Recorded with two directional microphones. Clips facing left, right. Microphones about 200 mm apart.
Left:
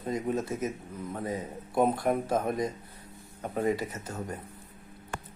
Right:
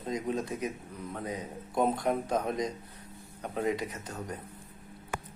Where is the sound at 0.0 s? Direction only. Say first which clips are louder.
Left 2 dB; 5° left (ahead or behind).